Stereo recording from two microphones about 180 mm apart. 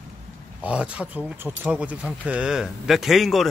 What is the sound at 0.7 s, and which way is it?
Speech, 5° right (ahead or behind).